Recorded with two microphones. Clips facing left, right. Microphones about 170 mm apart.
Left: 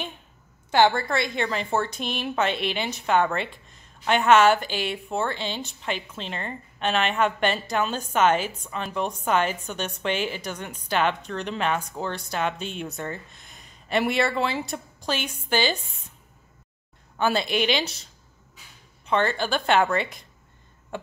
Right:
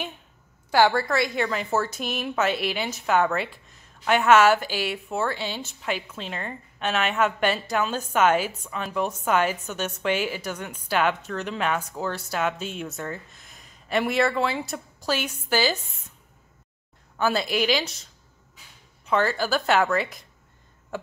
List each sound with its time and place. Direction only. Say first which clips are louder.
0.7 s a woman's voice: even; 20° left (ahead or behind)
1.5 s a woman's voice: even; 5° right (ahead or behind)
4.3 s a woman's voice: even; 5° right (ahead or behind)
17.2 s a woman's voice: even; centre (ahead or behind)
19.0 s a woman's voice: even; 5° right (ahead or behind)